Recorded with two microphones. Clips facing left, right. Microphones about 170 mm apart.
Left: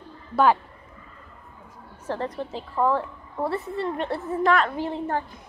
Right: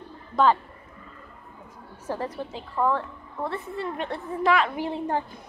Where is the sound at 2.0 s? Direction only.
10° right (ahead or behind).